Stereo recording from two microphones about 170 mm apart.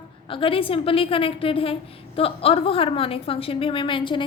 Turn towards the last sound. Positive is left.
turn(degrees=30)  # may be behind; listen again after turning